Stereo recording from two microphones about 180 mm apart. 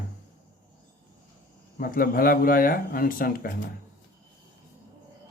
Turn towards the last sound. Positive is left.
turn(degrees=50)  # may be behind; listen again after turning